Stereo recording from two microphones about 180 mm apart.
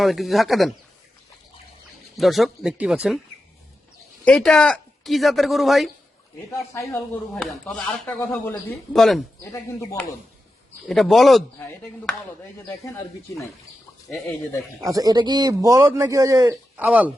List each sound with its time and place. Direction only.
0.0 s speech: centre (ahead or behind)
2.1 s speech: centre (ahead or behind)
4.3 s speech: 5° left (ahead or behind)
6.9 s speech: centre (ahead or behind)
9.4 s speech: 15° left (ahead or behind)
10.8 s speech: centre (ahead or behind); by 13.0 s 15° left (ahead or behind)
14.1 s speech: centre (ahead or behind)
14.8 s a man's voice: 20° right (ahead or behind)